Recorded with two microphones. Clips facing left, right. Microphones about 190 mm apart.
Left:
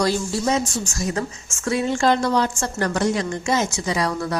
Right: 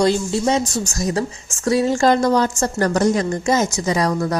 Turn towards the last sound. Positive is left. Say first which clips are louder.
# right 4 dB
turn(degrees=-40)  # may be behind; listen again after turning